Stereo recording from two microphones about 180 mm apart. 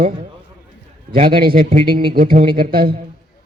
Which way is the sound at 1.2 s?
55° right (ahead or behind).